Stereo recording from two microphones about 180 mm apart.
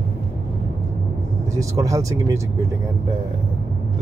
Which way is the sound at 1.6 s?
20° right (ahead or behind).